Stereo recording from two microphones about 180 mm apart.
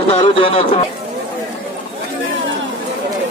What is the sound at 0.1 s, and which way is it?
Speech, 30° left (ahead or behind).